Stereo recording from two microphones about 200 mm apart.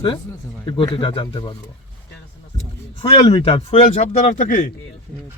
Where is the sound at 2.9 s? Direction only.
25° left (ahead or behind); by 4.7 s 40° left (ahead or behind).